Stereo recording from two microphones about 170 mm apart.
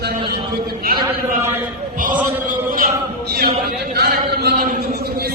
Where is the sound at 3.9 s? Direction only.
70° right (ahead or behind).